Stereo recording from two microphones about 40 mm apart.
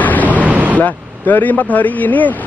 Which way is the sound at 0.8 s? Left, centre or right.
Left.